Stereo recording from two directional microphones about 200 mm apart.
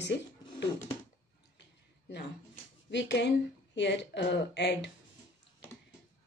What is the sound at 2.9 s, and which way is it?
Speech, 60° left (ahead or behind).